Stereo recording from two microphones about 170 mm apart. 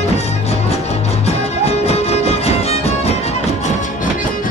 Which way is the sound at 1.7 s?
40° left (ahead or behind).